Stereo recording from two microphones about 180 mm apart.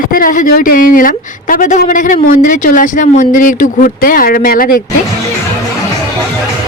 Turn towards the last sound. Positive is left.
turn(degrees=50)  # may be behind; listen again after turning